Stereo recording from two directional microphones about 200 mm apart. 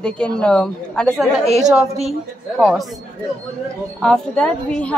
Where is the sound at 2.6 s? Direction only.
Centre (ahead or behind).